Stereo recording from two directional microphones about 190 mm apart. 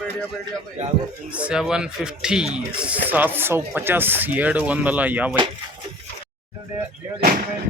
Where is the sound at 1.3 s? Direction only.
5° right (ahead or behind).